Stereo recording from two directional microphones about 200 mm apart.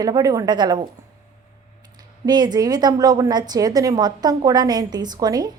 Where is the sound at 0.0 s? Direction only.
20° right (ahead or behind).